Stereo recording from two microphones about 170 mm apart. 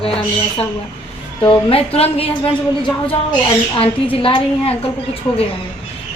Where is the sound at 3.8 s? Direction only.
30° left (ahead or behind).